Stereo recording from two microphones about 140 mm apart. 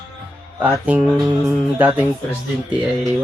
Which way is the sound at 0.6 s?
10° right (ahead or behind).